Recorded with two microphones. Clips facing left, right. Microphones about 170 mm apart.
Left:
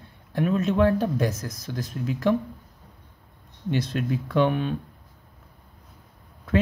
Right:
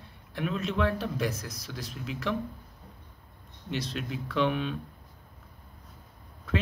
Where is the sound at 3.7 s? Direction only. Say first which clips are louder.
Left 8 dB; 50° left (ahead or behind).